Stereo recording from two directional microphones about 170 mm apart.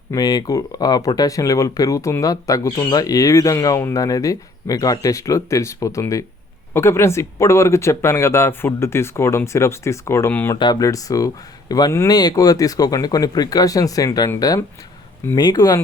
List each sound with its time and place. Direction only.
0.1 s speech: 20° left (ahead or behind)